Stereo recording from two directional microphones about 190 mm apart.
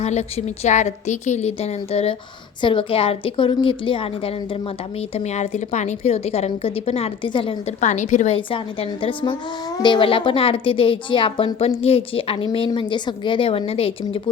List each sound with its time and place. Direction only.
0.0 s a woman's voice: 35° left (ahead or behind)
7.8 s a woman's voice: 40° left (ahead or behind)
8.4 s a child's voice: 25° left (ahead or behind)